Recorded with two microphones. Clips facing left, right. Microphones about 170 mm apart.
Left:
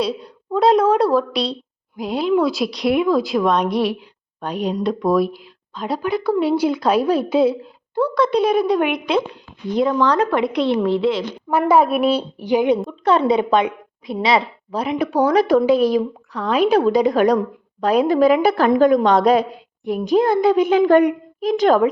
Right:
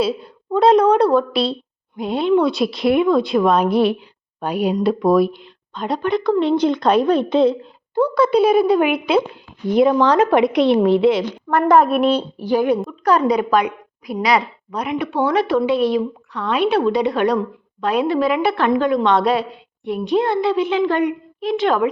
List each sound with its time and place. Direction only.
0.0 s speech: centre (ahead or behind)
10.3 s a woman's voice: 75° right (ahead or behind)
11.5 s a woman's voice: 5° left (ahead or behind); by 21.8 s 40° left (ahead or behind)